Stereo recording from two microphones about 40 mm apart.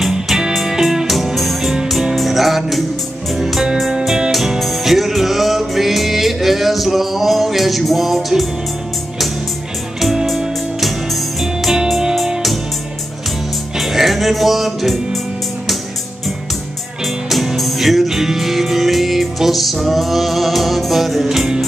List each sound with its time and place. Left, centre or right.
0.5 s music: centre
10.2 s music: centre
13.7 s music: centre
17.3 s music: centre